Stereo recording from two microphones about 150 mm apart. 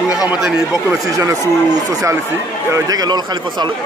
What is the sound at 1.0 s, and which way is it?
A man's voice, 20° right (ahead or behind).